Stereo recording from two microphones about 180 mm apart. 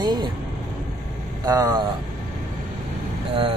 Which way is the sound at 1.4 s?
20° right (ahead or behind).